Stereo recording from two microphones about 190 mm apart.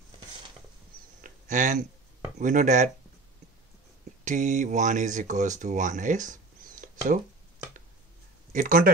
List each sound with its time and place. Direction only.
1.5 s speech: 40° right (ahead or behind)
4.2 s speech: 40° right (ahead or behind)
8.5 s speech: 45° right (ahead or behind)